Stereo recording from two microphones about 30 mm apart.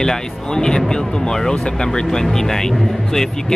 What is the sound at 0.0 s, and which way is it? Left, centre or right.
Speech, left.